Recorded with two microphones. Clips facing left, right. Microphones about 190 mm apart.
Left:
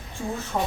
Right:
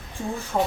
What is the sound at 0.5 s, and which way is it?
Speech, 15° right (ahead or behind).